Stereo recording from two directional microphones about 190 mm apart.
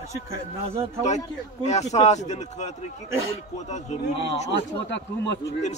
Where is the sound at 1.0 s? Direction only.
35° left (ahead or behind).